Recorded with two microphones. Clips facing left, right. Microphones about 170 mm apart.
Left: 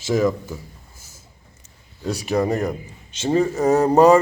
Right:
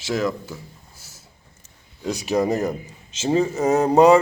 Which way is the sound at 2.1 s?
Centre (ahead or behind).